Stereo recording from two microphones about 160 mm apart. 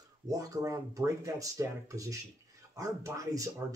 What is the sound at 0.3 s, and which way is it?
Speech, 20° right (ahead or behind).